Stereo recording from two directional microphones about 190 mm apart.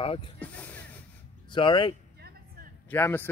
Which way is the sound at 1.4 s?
25° left (ahead or behind).